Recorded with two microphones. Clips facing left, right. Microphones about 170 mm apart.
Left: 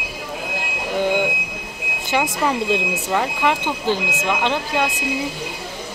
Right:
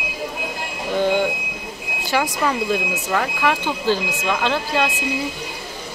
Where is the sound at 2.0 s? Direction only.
20° left (ahead or behind).